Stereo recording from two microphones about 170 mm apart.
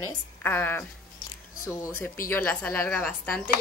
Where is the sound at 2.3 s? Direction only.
10° left (ahead or behind).